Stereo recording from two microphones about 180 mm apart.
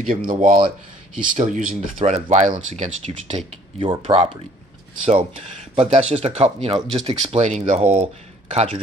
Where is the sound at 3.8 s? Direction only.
30° right (ahead or behind).